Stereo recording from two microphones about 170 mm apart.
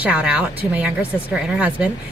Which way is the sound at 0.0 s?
5° right (ahead or behind).